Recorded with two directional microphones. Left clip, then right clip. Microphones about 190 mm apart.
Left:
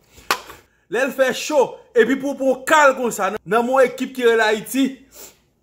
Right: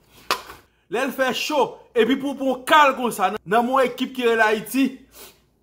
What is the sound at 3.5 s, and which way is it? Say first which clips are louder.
Speech: left 2 dB; 15° left (ahead or behind).